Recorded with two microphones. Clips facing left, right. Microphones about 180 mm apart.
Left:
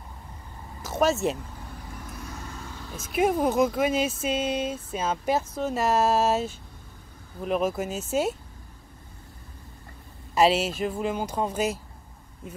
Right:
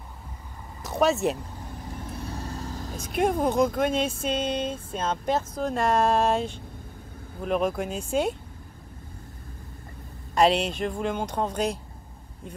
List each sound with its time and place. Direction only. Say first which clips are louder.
0.8 s speech: right 1 dB; centre (ahead or behind)
2.0 s vehicle: right 5 dB; 30° right (ahead or behind)
3.0 s speech: left 1 dB; 5° left (ahead or behind)
10.3 s speech: even; 5° left (ahead or behind)